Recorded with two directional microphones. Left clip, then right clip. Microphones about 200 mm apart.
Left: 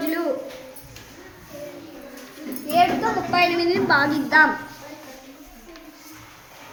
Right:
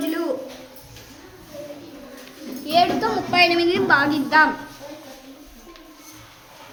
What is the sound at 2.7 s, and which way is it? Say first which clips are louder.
A woman's voice: even; 45° right (ahead or behind).